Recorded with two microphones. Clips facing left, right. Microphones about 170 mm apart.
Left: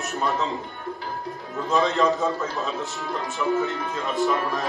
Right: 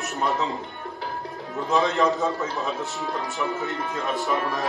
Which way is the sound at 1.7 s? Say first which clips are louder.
Even; centre (ahead or behind).